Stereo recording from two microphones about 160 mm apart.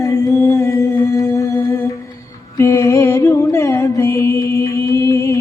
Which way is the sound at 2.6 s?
15° left (ahead or behind).